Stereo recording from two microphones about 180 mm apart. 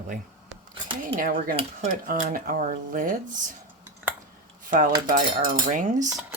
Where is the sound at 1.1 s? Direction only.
50° right (ahead or behind).